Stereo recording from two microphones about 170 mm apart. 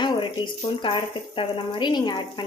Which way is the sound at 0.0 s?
30° left (ahead or behind).